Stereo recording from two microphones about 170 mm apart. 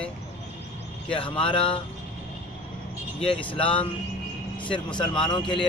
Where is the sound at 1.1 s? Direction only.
30° left (ahead or behind).